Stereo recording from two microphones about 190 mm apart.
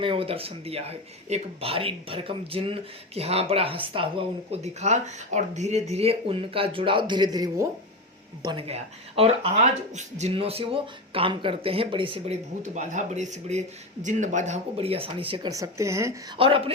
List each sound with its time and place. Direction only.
0.0 s speech: 30° right (ahead or behind)
16.4 s speech: 30° right (ahead or behind)